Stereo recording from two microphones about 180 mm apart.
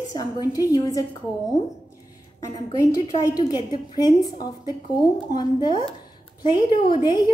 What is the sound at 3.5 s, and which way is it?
Speech, 20° left (ahead or behind).